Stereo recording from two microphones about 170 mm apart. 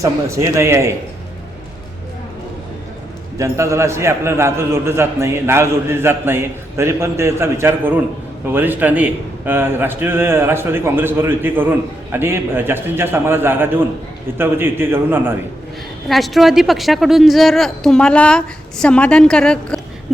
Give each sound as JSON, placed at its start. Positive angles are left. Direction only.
{"t": 0.0, "sound": "a man's voice", "side_deg": -15}
{"t": 3.3, "sound": "a man's voice", "side_deg": -15}
{"t": 16.0, "sound": "a woman's voice", "side_deg": 0}